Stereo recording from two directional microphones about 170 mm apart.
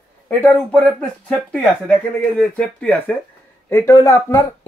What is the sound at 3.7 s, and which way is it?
Speech, 20° left (ahead or behind).